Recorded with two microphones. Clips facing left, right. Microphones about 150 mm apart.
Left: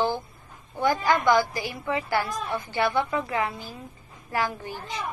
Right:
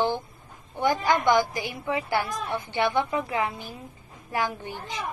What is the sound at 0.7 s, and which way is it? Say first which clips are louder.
A woman's voice: even; 20° right (ahead or behind).